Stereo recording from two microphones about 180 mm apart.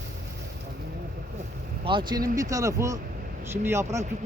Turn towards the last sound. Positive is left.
turn(degrees=-15)  # may be behind; listen again after turning